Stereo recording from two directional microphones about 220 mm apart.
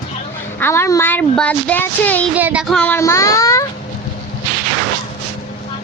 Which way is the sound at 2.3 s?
5° right (ahead or behind).